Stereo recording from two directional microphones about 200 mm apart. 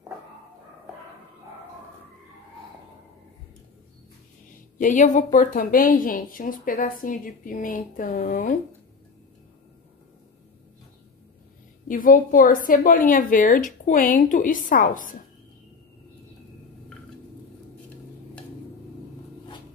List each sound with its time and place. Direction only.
4.7 s speech: 40° left (ahead or behind)
11.9 s a woman's voice: 45° left (ahead or behind)